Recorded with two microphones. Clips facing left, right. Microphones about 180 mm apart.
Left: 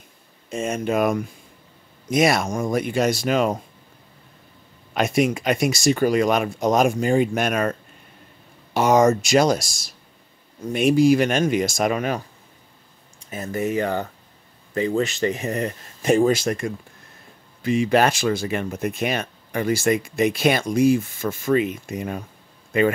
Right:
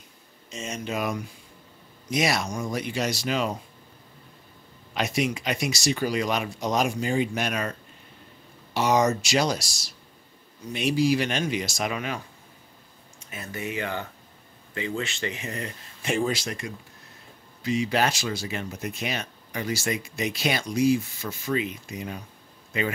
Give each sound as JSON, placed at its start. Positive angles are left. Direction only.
{"t": 0.5, "sound": "speech", "side_deg": 55}
{"t": 4.9, "sound": "speech", "side_deg": 50}
{"t": 8.7, "sound": "speech", "side_deg": 50}
{"t": 13.2, "sound": "speech", "side_deg": 40}